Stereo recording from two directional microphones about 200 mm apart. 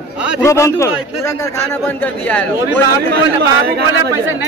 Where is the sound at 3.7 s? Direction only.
50° right (ahead or behind).